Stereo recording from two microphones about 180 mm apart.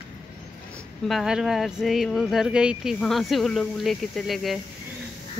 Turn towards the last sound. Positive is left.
turn(degrees=0)  # may be behind; listen again after turning